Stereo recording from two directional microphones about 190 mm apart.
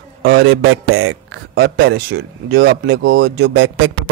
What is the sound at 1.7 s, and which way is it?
Speech, 60° right (ahead or behind).